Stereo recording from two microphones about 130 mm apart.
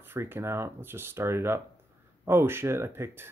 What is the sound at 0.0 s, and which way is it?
Speech, 15° right (ahead or behind).